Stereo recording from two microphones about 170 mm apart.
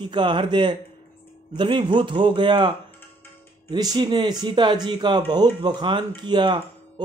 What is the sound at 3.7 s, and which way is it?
Speech, 25° right (ahead or behind).